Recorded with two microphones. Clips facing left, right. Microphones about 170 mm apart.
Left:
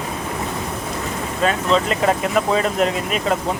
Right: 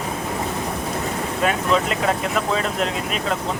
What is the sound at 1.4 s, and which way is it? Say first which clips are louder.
Speech: left 2 dB; 10° right (ahead or behind).